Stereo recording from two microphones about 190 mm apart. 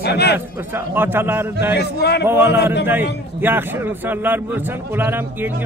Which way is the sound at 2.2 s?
10° right (ahead or behind).